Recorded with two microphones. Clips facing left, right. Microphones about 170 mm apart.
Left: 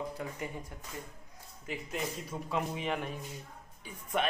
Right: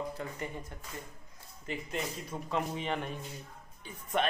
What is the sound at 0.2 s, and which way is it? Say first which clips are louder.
Speech: even; 10° left (ahead or behind).